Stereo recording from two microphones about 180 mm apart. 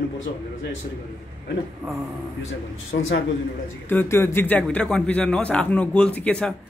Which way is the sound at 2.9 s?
90° left.